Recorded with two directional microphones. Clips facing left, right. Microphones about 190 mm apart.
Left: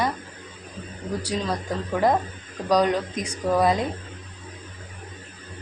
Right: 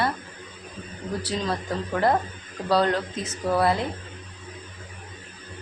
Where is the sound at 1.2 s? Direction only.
10° left (ahead or behind).